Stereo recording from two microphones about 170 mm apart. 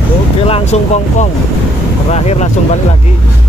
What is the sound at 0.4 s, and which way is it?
Speech, 35° left (ahead or behind).